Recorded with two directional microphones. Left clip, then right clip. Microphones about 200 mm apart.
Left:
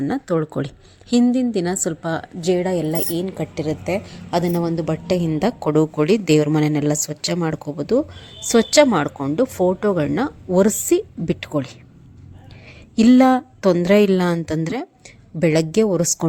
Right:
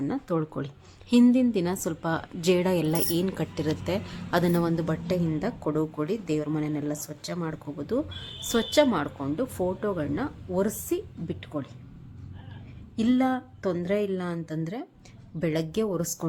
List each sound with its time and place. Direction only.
0.0 s a woman's voice: 20° left (ahead or behind); by 11.7 s 45° left (ahead or behind)
13.0 s a woman's voice: 45° left (ahead or behind)